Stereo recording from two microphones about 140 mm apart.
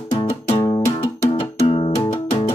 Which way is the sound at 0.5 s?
25° left (ahead or behind).